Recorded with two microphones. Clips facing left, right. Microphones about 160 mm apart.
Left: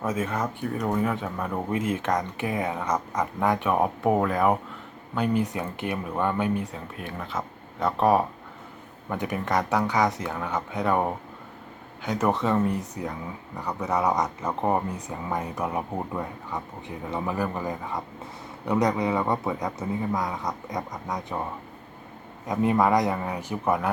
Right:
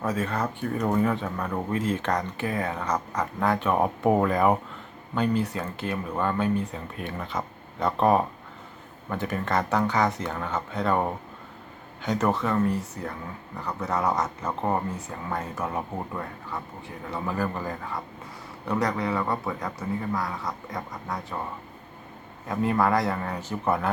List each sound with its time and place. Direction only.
0.1 s speech: 10° left (ahead or behind)
5.1 s speech: 10° left (ahead or behind)
6.7 s speech: centre (ahead or behind)
12.3 s speech: 20° left (ahead or behind)
22.4 s speech: 15° left (ahead or behind)